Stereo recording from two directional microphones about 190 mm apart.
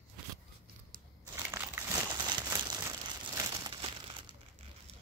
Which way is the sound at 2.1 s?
20° right (ahead or behind).